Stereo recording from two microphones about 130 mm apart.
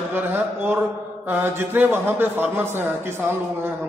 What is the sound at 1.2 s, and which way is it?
A man's voice, 15° right (ahead or behind).